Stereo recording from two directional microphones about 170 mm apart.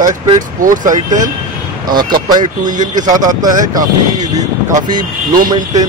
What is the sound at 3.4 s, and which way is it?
Speech, 50° right (ahead or behind).